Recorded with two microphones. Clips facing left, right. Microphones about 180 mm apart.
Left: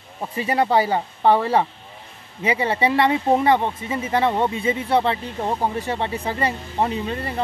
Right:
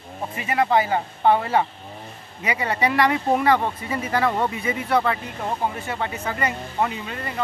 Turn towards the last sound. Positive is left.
turn(degrees=35)  # may be behind; listen again after turning